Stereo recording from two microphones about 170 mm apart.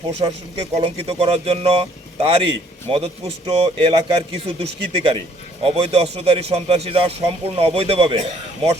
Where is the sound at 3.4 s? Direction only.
35° right (ahead or behind).